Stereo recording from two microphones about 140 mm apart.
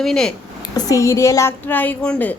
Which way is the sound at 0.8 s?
25° left (ahead or behind).